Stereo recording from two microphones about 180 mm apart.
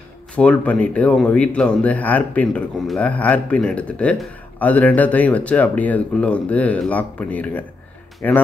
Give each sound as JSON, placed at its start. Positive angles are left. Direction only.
{"t": 0.4, "sound": "speech", "side_deg": 5}